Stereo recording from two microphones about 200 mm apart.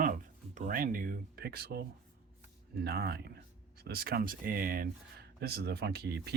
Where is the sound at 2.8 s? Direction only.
50° right (ahead or behind).